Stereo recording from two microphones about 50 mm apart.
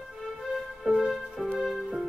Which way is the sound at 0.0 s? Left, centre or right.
Centre.